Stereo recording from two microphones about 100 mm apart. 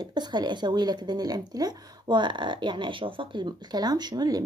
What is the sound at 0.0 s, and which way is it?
Speech, 45° right (ahead or behind).